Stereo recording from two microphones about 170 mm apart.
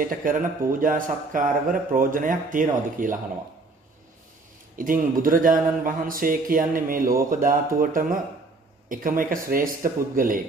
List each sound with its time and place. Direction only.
0.1 s a man's voice: 55° right (ahead or behind)
4.7 s a man's voice: 55° right (ahead or behind)